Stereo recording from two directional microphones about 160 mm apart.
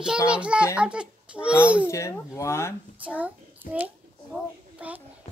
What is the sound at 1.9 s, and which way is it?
Speech, 20° left (ahead or behind).